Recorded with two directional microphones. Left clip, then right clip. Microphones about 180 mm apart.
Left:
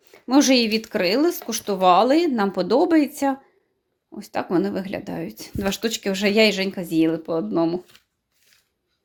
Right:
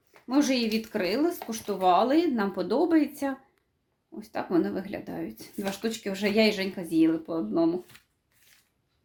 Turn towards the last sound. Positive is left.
turn(degrees=40)  # may be behind; listen again after turning